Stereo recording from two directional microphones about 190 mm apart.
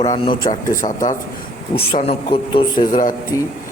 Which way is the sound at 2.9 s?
45° left (ahead or behind).